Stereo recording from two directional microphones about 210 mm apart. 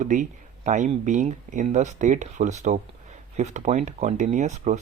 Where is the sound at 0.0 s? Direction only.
35° right (ahead or behind).